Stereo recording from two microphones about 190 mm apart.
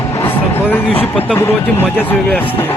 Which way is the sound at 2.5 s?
10° left (ahead or behind).